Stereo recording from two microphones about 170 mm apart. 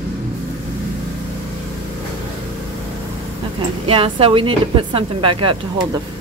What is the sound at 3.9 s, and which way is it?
A woman's voice, 30° right (ahead or behind).